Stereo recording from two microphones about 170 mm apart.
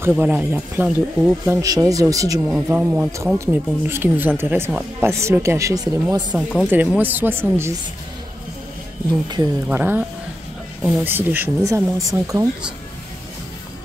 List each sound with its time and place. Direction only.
0.0 s speech: 10° right (ahead or behind)
2.4 s speech: 10° right (ahead or behind)
6.6 s speech: 5° right (ahead or behind)
9.7 s speech: 10° right (ahead or behind)